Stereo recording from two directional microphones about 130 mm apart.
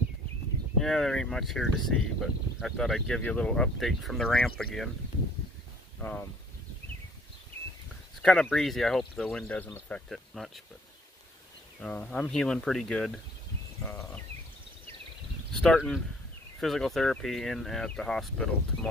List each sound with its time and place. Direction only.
0.7 s speech: 5° left (ahead or behind)
5.9 s speech: 15° left (ahead or behind)
8.2 s speech: 5° left (ahead or behind)
11.8 s speech: 10° left (ahead or behind)
13.8 s a sound: 15° left (ahead or behind)
15.6 s speech: 5° left (ahead or behind)